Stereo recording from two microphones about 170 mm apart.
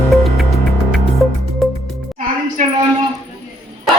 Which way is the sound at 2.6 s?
50° right (ahead or behind).